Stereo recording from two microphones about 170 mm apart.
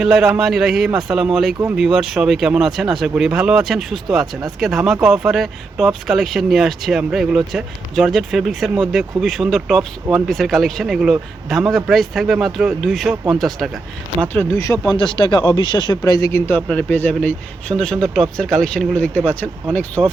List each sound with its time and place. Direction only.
0.0 s speech: centre (ahead or behind)
14.2 s speech: 10° left (ahead or behind)
14.9 s speech: 30° left (ahead or behind); by 19.5 s 5° left (ahead or behind)
20.0 s speech: 10° right (ahead or behind)